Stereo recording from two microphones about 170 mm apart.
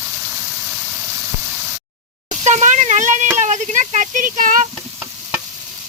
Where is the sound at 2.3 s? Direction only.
40° right (ahead or behind).